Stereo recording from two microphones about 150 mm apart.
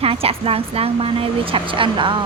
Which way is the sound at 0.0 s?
40° right (ahead or behind).